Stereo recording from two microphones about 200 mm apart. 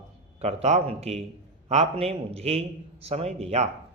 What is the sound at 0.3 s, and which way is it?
A man's voice, 30° right (ahead or behind).